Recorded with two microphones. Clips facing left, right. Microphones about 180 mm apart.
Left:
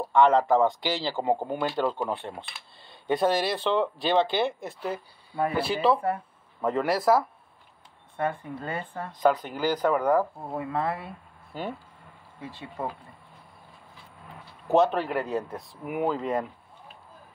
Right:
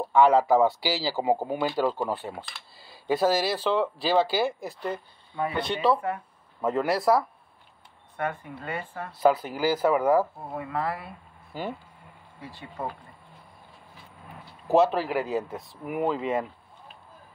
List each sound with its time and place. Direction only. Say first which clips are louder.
0.1 s speech: right 1 dB; 5° right (ahead or behind)
8.2 s speech: left 2 dB; 30° left (ahead or behind)
9.1 s speech: right 1 dB; 5° right (ahead or behind)
10.5 s speech: left 3 dB; 25° left (ahead or behind)
11.5 s speech: right 1 dB; 5° right (ahead or behind)
12.4 s speech: left 2 dB; 20° left (ahead or behind)
14.7 s speech: right 1 dB; centre (ahead or behind)